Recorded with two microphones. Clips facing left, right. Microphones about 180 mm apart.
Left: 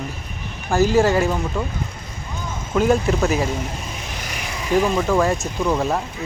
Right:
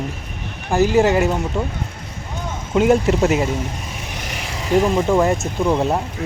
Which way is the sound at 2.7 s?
20° right (ahead or behind).